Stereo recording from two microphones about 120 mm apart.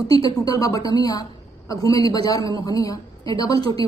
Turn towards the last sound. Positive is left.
turn(degrees=35)  # may be behind; listen again after turning